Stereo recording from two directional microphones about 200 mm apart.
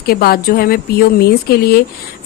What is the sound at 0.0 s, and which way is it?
A woman's voice, 50° left (ahead or behind).